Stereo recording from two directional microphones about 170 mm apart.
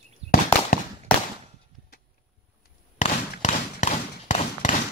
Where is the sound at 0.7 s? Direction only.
55° left (ahead or behind).